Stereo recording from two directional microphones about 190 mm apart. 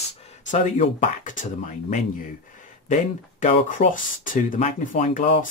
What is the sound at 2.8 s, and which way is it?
Speech, 40° left (ahead or behind).